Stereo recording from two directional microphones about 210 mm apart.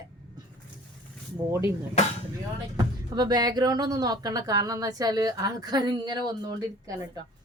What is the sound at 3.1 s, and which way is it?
Speech, 20° right (ahead or behind).